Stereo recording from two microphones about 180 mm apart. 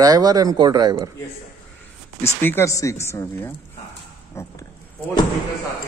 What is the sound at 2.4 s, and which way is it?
A man's voice, 10° left (ahead or behind).